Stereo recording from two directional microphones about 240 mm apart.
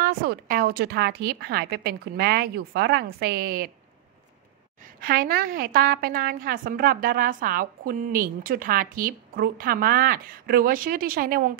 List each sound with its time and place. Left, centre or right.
0.0 s a woman's voice: right
5.0 s a woman's voice: right